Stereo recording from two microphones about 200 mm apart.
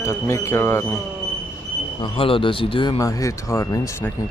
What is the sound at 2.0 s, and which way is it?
Speech, 25° left (ahead or behind).